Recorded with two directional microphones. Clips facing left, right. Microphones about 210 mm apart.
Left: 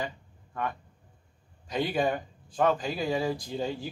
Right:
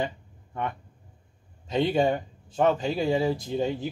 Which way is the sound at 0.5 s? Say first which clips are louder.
Right 2 dB; 25° right (ahead or behind).